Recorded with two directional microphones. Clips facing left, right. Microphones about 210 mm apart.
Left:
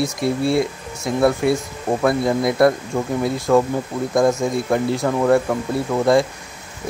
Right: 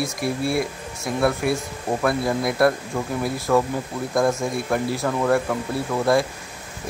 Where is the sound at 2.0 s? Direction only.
20° left (ahead or behind).